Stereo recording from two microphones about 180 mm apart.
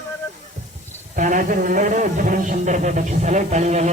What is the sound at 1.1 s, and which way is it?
A man's voice, 45° right (ahead or behind).